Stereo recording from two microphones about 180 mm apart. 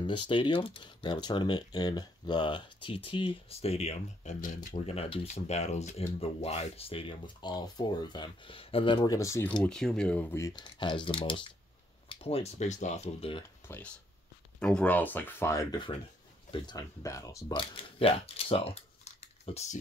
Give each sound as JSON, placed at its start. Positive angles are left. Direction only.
{"t": 0.0, "sound": "speech", "side_deg": 30}
{"t": 10.5, "sound": "speech", "side_deg": 25}
{"t": 13.7, "sound": "speech", "side_deg": 15}